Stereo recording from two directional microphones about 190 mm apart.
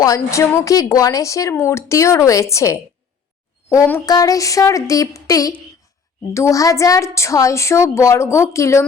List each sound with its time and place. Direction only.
0.0 s speech: 15° left (ahead or behind)